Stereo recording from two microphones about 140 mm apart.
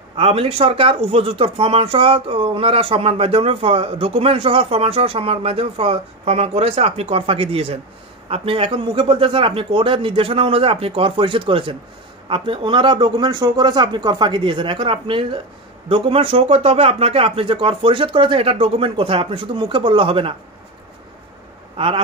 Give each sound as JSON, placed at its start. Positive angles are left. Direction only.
{"t": 0.1, "sound": "a man's voice", "side_deg": -45}
{"t": 21.7, "sound": "speech", "side_deg": -40}